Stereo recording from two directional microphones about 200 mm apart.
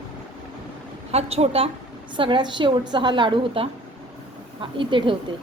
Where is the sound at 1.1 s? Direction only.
30° right (ahead or behind).